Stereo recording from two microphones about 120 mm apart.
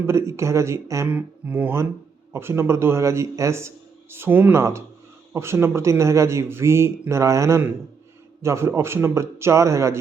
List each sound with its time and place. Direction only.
0.0 s speech: 20° right (ahead or behind)